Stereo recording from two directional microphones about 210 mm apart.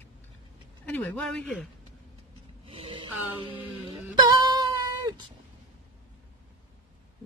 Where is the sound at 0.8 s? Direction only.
5° left (ahead or behind).